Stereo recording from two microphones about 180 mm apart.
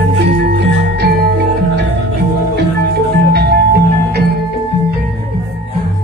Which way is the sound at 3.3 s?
65° right (ahead or behind).